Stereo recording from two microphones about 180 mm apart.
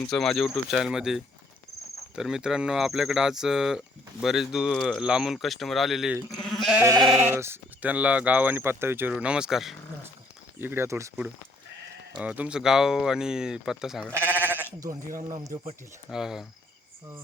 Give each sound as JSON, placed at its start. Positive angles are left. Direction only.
{"t": 0.1, "sound": "speech", "side_deg": 0}
{"t": 6.5, "sound": "goat", "side_deg": 0}
{"t": 6.8, "sound": "sheep", "side_deg": -20}
{"t": 7.3, "sound": "speech", "side_deg": -15}
{"t": 10.6, "sound": "speech", "side_deg": -15}
{"t": 14.3, "sound": "sheep", "side_deg": -10}
{"t": 15.0, "sound": "speech", "side_deg": -50}
{"t": 15.4, "sound": "sheep", "side_deg": -20}
{"t": 16.0, "sound": "speech", "side_deg": 0}